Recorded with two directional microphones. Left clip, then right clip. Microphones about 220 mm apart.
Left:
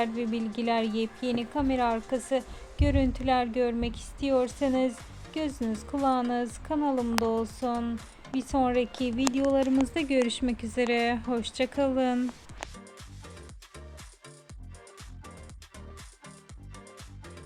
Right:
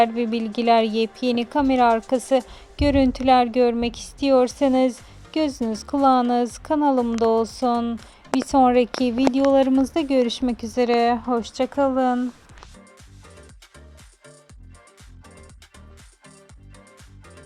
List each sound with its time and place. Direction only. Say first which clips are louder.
0.0 s a woman's voice: right 10 dB; 45° right (ahead or behind)
9.9 s a woman's voice: right 6 dB; 35° right (ahead or behind)